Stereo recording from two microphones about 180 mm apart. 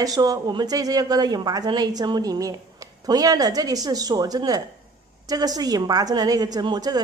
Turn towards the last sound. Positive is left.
turn(degrees=-20)  # may be behind; listen again after turning